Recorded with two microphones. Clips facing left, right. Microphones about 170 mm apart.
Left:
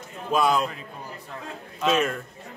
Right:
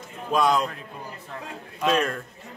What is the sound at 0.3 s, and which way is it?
Speech, 5° left (ahead or behind).